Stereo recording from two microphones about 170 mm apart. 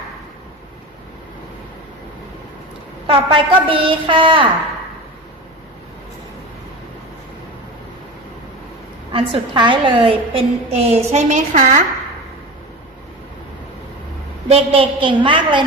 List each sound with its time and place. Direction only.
3.1 s a woman's voice: 30° right (ahead or behind)
9.1 s a woman's voice: 30° right (ahead or behind); by 11.8 s 45° right (ahead or behind)
14.4 s a woman's voice: 35° right (ahead or behind)